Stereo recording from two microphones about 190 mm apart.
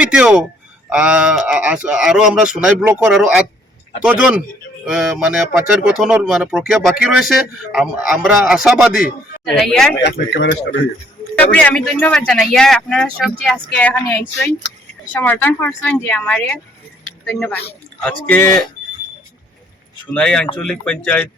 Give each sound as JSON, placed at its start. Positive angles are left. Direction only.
{"t": 0.0, "sound": "a man's voice", "side_deg": -5}
{"t": 10.0, "sound": "a man's voice", "side_deg": 65}
{"t": 11.3, "sound": "speech", "side_deg": 5}
{"t": 20.1, "sound": "speech", "side_deg": 5}